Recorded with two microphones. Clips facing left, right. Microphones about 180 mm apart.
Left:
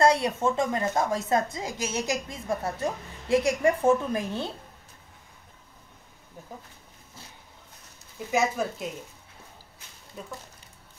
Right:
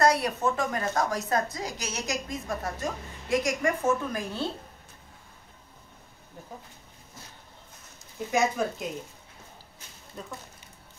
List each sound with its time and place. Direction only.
0.0 s a woman's voice: 25° left (ahead or behind)
8.3 s speech: 5° left (ahead or behind)
10.2 s speech: 5° left (ahead or behind)